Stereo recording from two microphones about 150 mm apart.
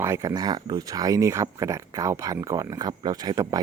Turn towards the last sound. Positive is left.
turn(degrees=-25)  # may be behind; listen again after turning